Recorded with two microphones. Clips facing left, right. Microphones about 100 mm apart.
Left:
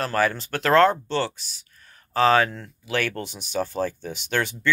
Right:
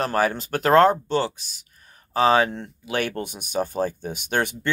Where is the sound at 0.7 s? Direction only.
35° right (ahead or behind).